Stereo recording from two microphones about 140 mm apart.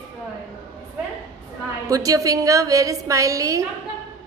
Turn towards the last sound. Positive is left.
turn(degrees=-25)  # may be behind; listen again after turning